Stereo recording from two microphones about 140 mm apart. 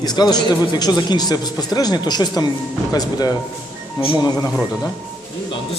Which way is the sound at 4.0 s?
40° left (ahead or behind).